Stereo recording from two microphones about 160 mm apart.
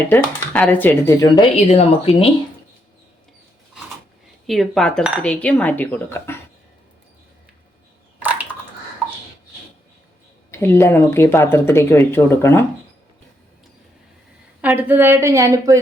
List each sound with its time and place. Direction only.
0.1 s speech: 10° left (ahead or behind)
1.5 s speech: 40° left (ahead or behind)
4.4 s speech: centre (ahead or behind)
8.2 s a sound: 10° right (ahead or behind)
10.5 s speech: 15° left (ahead or behind)
14.6 s a woman's voice: 10° right (ahead or behind)